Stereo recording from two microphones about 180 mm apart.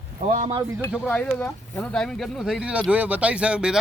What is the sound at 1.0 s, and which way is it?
Speech, 10° left (ahead or behind).